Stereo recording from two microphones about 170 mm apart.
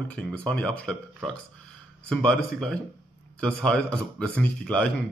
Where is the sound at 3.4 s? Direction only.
5° left (ahead or behind).